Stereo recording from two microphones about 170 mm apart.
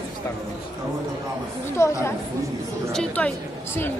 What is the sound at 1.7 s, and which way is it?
Speech, 15° left (ahead or behind).